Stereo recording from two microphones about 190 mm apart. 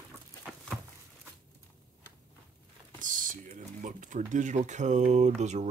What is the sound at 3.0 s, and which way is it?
Speech, 45° right (ahead or behind).